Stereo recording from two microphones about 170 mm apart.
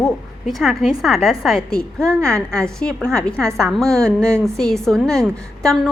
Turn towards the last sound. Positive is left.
turn(degrees=5)  # may be behind; listen again after turning